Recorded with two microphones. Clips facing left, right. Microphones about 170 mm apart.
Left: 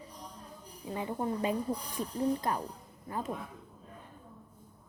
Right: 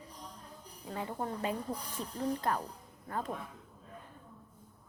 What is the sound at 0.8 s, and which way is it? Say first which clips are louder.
Speech: left 4 dB; 15° left (ahead or behind).